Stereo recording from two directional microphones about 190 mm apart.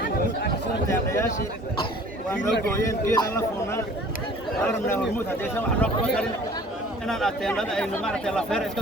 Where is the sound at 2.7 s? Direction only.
15° left (ahead or behind).